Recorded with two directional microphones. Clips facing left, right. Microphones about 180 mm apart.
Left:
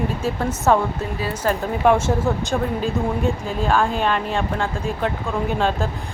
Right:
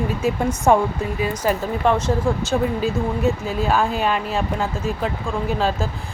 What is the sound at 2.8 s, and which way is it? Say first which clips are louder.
Speech: even; 5° right (ahead or behind).